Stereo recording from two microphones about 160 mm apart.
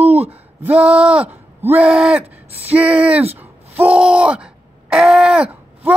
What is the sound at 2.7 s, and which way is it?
Speech, 10° right (ahead or behind).